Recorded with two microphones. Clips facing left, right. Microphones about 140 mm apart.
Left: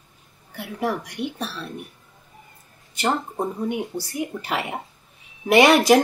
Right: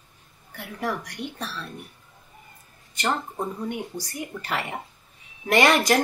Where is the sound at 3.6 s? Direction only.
15° left (ahead or behind).